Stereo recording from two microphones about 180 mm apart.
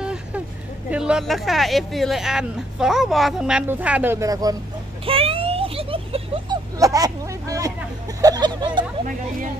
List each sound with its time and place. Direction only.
0.0 s vehicle: 5° right (ahead or behind)
0.8 s speech: 5° right (ahead or behind)
5.0 s a sound: 30° right (ahead or behind)
6.8 s speech: 20° right (ahead or behind)